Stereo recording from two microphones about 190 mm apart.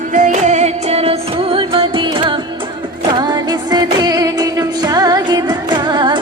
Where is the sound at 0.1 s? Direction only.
40° right (ahead or behind).